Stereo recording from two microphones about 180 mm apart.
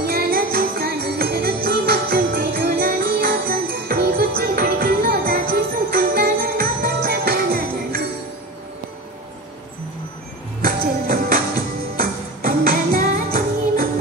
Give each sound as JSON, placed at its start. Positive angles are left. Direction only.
{"t": 0.0, "sound": "music", "side_deg": -60}
{"t": 10.6, "sound": "music", "side_deg": -55}